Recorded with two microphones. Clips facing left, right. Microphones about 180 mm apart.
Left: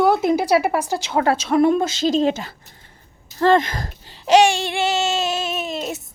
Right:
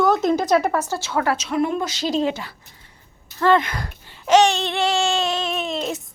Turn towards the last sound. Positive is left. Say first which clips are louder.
# right 1 dB
turn(degrees=5)  # may be behind; listen again after turning